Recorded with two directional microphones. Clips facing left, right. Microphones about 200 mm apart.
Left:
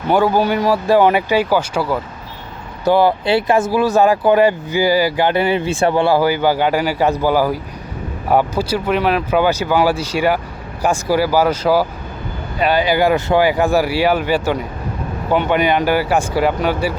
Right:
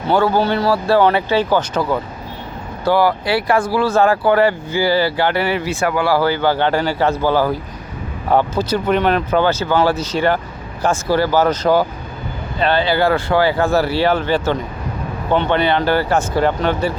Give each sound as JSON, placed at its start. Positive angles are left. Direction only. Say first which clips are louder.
{"t": 0.1, "sound": "speech", "louder": "left 1 dB", "side_deg": 15}
{"t": 2.8, "sound": "speech", "louder": "left 2 dB", "side_deg": 20}
{"t": 6.1, "sound": "speech", "louder": "left 1 dB", "side_deg": 15}